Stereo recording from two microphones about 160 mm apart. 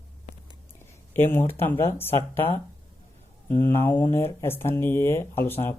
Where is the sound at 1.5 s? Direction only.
15° left (ahead or behind).